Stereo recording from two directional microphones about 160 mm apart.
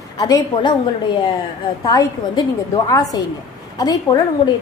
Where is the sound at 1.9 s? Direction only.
25° left (ahead or behind).